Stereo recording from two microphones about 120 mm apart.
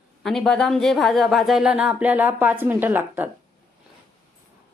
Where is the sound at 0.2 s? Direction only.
Centre (ahead or behind); by 3.2 s 15° right (ahead or behind).